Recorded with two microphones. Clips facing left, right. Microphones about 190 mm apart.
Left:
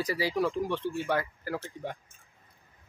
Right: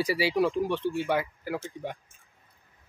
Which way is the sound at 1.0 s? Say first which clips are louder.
Right 2 dB; 10° right (ahead or behind).